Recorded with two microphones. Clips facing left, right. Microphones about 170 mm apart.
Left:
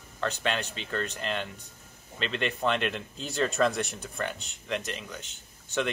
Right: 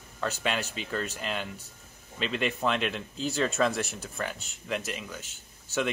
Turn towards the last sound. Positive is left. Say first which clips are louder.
# even
turn(degrees=-5)  # may be behind; listen again after turning